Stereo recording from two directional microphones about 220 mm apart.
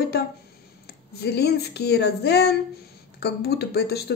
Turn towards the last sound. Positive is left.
turn(degrees=45)  # may be behind; listen again after turning